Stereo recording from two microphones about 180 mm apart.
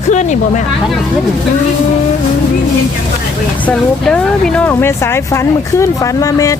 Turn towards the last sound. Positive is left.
turn(degrees=20)  # may be behind; listen again after turning